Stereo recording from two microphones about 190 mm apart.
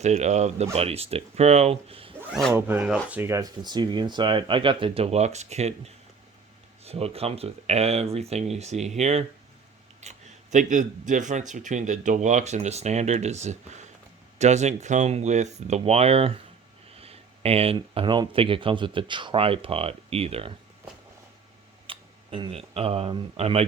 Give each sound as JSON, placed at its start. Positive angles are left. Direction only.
{"t": 0.0, "sound": "speech", "side_deg": -35}
{"t": 2.3, "sound": "speech", "side_deg": 0}
{"t": 2.6, "sound": "speech", "side_deg": -10}
{"t": 21.8, "sound": "speech", "side_deg": -30}